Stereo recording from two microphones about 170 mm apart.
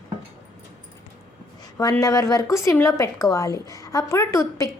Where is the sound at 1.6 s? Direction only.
20° left (ahead or behind).